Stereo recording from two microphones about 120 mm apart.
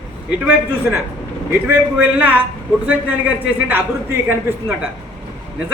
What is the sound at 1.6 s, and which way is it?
Speech, 15° right (ahead or behind).